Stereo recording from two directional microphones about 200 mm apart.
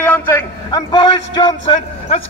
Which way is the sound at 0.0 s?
10° left (ahead or behind).